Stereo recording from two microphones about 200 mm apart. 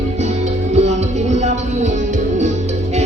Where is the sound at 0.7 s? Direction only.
35° right (ahead or behind).